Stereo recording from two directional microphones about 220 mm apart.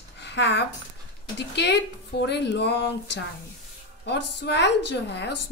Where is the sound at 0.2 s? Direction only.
50° left (ahead or behind).